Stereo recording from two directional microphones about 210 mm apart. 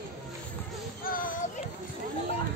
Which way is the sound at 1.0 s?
40° left (ahead or behind).